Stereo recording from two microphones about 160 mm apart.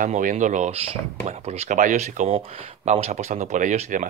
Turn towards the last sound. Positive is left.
turn(degrees=-50)  # may be behind; listen again after turning